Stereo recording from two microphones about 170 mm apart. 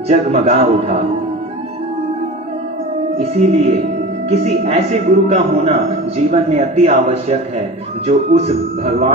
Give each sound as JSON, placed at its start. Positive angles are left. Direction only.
{"t": 0.3, "sound": "a man's voice", "side_deg": -40}
{"t": 3.2, "sound": "a man's voice", "side_deg": -40}